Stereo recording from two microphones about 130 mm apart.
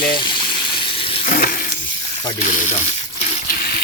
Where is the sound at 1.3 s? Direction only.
90° left.